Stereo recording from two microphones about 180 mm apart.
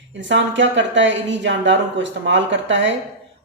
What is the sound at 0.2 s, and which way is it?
A woman's voice, 90° right.